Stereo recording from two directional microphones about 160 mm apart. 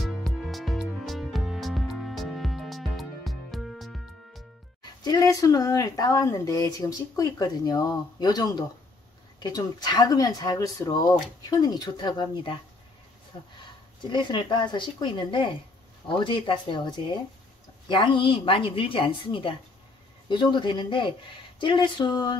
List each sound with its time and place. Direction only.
0.0 s music: centre (ahead or behind)
5.0 s speech: 20° left (ahead or behind)
14.1 s speech: 30° left (ahead or behind)